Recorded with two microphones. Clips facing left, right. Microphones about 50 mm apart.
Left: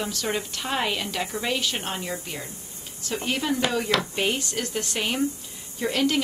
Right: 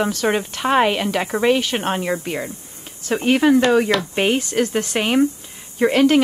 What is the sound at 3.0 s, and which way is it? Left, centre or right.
Speech, right.